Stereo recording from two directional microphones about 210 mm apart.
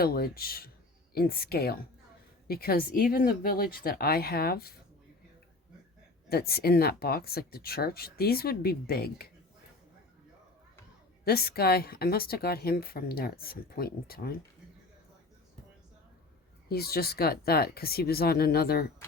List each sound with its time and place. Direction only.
0.0 s a woman's voice: 45° left (ahead or behind)
6.2 s a woman's voice: 45° left (ahead or behind)
11.3 s a woman's voice: 45° left (ahead or behind)
16.6 s a woman's voice: 45° left (ahead or behind)